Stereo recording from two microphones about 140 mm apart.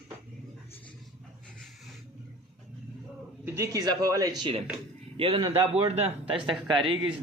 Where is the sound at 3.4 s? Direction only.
20° right (ahead or behind); by 6.9 s 35° right (ahead or behind).